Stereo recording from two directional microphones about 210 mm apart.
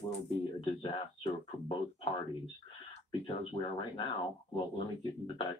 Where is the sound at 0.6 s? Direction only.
25° left (ahead or behind).